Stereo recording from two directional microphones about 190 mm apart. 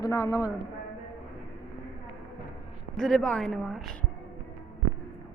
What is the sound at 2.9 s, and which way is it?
Speech, centre (ahead or behind).